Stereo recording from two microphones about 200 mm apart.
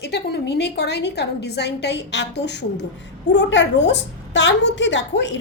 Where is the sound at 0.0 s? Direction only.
55° left (ahead or behind).